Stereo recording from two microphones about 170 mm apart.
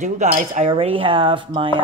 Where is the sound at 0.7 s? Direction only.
30° right (ahead or behind).